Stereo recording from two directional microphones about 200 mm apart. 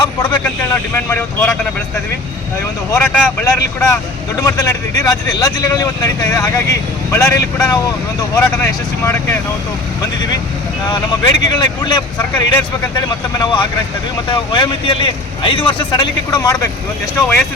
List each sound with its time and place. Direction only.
0.0 s vehicle: 20° left (ahead or behind)
0.4 s speech: 10° left (ahead or behind)
2.9 s speech: 5° left (ahead or behind)
10.8 s speech: 20° left (ahead or behind)